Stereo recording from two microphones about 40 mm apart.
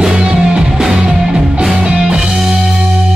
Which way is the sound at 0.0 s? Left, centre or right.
Centre.